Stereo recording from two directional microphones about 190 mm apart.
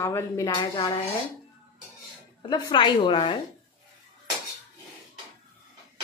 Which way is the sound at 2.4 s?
25° left (ahead or behind).